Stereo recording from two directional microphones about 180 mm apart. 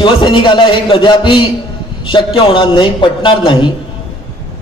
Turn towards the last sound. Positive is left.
turn(degrees=25)  # may be behind; listen again after turning